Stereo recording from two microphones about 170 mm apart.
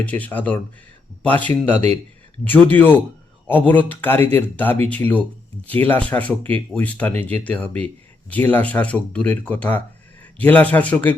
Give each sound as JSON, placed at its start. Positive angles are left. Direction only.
{"t": 0.0, "sound": "speech", "side_deg": 10}
{"t": 1.7, "sound": "speech", "side_deg": -35}
{"t": 2.4, "sound": "speech", "side_deg": 10}